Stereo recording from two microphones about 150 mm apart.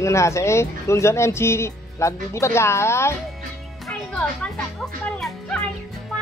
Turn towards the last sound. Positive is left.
turn(degrees=5)  # may be behind; listen again after turning